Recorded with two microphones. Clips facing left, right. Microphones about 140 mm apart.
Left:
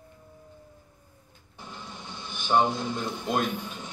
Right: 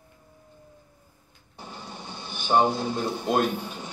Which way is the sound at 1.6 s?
35° right (ahead or behind).